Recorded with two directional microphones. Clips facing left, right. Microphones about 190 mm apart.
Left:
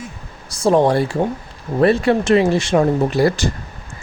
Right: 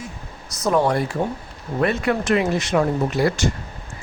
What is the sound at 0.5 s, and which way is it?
Speech, 30° left (ahead or behind).